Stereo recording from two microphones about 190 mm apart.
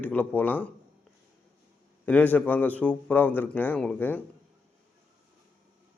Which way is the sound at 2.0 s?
10° left (ahead or behind).